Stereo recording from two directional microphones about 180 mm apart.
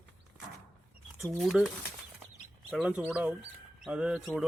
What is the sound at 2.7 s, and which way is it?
Speech, centre (ahead or behind).